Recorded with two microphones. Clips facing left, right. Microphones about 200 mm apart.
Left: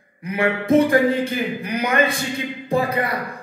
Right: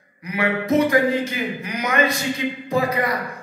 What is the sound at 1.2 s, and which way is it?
Speech, 60° left (ahead or behind).